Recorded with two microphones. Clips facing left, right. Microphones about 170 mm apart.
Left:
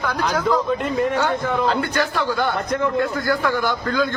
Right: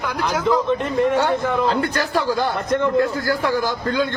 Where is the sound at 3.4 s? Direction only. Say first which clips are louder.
Right 1 dB; 30° right (ahead or behind).